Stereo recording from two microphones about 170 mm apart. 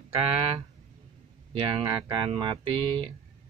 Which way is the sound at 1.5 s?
25° right (ahead or behind).